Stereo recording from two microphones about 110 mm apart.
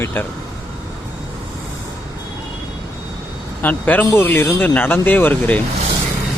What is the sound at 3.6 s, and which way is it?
Speech, 15° left (ahead or behind).